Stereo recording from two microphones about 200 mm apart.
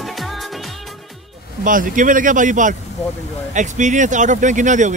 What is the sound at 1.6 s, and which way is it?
Speech, 40° right (ahead or behind).